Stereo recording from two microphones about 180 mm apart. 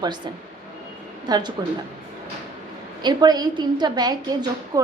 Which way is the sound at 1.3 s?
25° right (ahead or behind).